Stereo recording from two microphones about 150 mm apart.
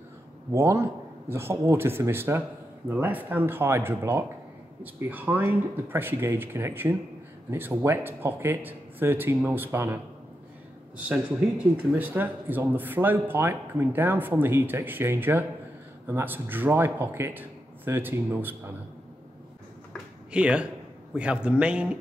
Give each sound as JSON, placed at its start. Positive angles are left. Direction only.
{"t": 0.5, "sound": "a man's voice", "side_deg": -20}
{"t": 11.7, "sound": "speech", "side_deg": -10}
{"t": 20.3, "sound": "a man's voice", "side_deg": -5}